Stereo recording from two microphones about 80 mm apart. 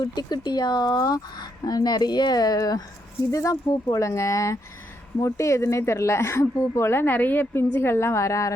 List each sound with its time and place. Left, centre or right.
0.0 s speech: left